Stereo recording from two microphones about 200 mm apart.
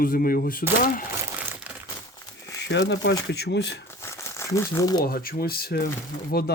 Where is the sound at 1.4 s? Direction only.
10° right (ahead or behind).